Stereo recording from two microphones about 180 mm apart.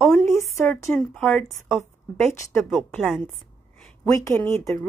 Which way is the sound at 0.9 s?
5° left (ahead or behind).